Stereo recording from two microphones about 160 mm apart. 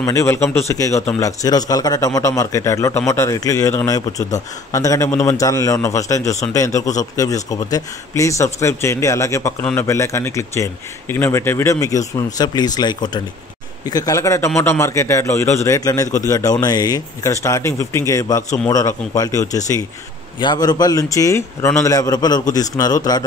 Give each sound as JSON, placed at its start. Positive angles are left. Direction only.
{"t": 0.0, "sound": "a man's voice", "side_deg": 20}